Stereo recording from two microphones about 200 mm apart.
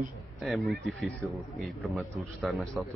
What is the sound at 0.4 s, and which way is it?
Speech, centre (ahead or behind).